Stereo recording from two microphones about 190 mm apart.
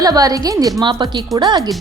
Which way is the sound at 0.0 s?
20° right (ahead or behind).